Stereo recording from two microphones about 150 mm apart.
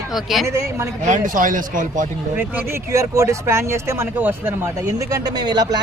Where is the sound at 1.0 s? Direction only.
60° right (ahead or behind).